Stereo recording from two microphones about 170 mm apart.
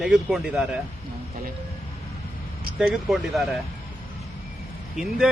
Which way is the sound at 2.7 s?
5° right (ahead or behind).